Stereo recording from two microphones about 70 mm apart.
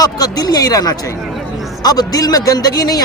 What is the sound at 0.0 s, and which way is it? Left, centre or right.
Speech, left.